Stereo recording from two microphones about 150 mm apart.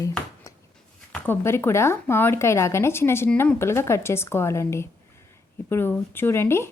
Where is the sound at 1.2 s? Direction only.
15° left (ahead or behind).